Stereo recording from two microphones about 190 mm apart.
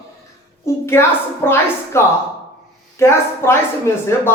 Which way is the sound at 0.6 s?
15° left (ahead or behind).